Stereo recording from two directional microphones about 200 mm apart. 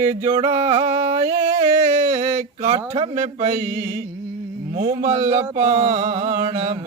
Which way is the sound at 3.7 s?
15° right (ahead or behind).